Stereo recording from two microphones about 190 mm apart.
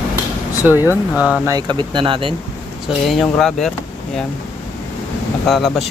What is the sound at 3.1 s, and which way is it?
Speech, centre (ahead or behind).